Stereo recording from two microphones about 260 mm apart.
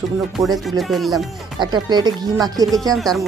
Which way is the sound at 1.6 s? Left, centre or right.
Centre.